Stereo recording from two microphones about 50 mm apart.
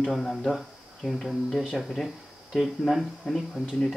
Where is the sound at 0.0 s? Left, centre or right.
Centre.